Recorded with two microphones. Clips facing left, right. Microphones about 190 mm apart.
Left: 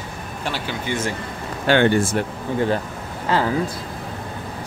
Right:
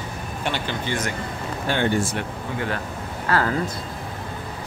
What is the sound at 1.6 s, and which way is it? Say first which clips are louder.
Speech: left 7 dB; 85° left.